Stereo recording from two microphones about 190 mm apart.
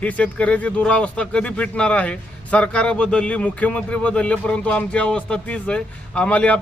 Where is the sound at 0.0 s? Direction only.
5° left (ahead or behind).